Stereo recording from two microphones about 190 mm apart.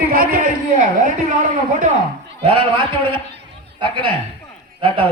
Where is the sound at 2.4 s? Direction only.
30° right (ahead or behind).